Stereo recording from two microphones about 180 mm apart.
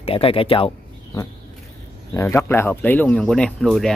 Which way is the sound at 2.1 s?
15° left (ahead or behind).